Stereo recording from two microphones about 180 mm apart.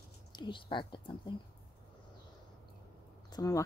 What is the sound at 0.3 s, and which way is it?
A woman's voice, 25° left (ahead or behind).